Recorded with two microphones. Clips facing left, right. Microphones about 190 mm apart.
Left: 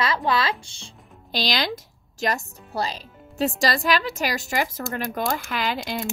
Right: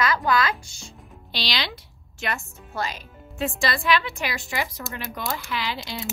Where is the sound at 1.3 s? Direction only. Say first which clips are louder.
Left 5 dB; 45° left (ahead or behind).